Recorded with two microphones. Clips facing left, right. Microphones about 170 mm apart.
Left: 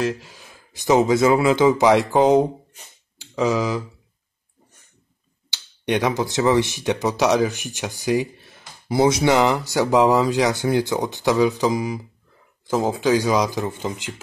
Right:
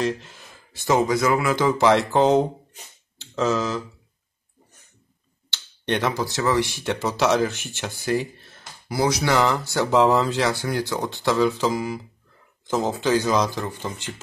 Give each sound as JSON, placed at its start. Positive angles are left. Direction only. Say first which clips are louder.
{"t": 0.0, "sound": "speech", "louder": "left 1 dB", "side_deg": 5}
{"t": 5.5, "sound": "speech", "louder": "left 3 dB", "side_deg": 15}
{"t": 8.8, "sound": "speech", "louder": "left 5 dB", "side_deg": 25}